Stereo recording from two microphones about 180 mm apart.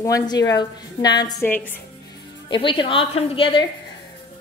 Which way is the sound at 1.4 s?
10° left (ahead or behind).